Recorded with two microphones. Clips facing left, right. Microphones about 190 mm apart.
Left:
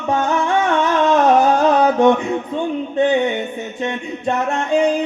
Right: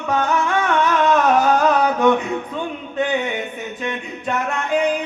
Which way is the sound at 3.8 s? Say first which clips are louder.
Left 5 dB; 25° left (ahead or behind).